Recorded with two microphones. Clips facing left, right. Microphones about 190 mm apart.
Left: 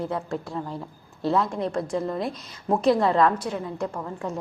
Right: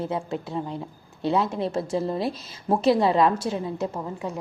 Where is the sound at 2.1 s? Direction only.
30° right (ahead or behind).